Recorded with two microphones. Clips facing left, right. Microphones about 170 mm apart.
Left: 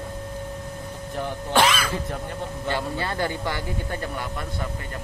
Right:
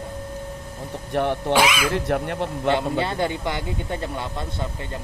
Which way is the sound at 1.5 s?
10° right (ahead or behind).